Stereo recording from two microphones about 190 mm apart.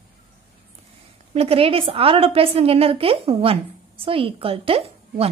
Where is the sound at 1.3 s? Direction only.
30° right (ahead or behind).